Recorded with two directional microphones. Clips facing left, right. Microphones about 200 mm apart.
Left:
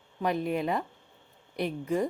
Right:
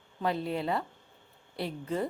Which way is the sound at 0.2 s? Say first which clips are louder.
Left 2 dB; 15° left (ahead or behind).